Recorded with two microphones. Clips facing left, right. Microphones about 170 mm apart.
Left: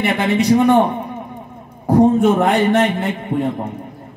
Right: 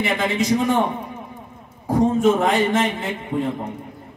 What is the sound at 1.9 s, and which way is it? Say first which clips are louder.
A man's voice: left 5 dB; 65° left (ahead or behind).